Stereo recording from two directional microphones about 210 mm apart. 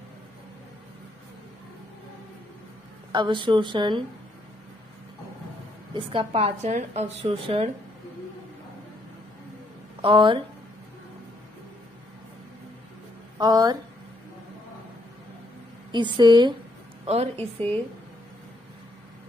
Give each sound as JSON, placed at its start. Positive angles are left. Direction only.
{"t": 3.1, "sound": "a woman's voice", "side_deg": -20}
{"t": 5.9, "sound": "a woman's voice", "side_deg": -25}
{"t": 10.0, "sound": "a woman's voice", "side_deg": -25}
{"t": 13.4, "sound": "a woman's voice", "side_deg": -20}
{"t": 15.9, "sound": "a woman's voice", "side_deg": -20}